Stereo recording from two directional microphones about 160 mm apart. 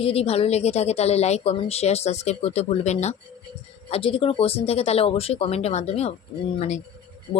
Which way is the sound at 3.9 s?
35° left (ahead or behind).